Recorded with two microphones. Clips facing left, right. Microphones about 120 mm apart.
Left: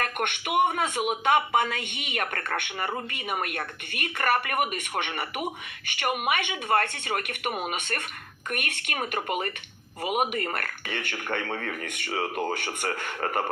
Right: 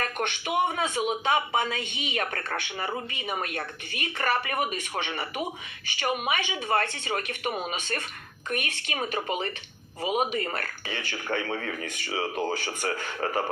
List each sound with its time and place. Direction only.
0.0 s a woman's voice: 55° left (ahead or behind)